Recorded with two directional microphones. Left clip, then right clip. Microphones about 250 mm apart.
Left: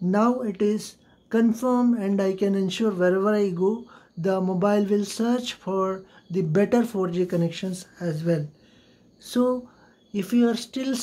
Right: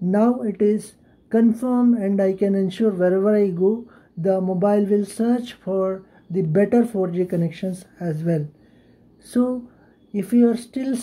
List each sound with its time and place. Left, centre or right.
0.1 s speech: centre